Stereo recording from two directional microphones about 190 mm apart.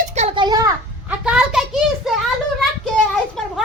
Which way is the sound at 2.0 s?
Centre (ahead or behind).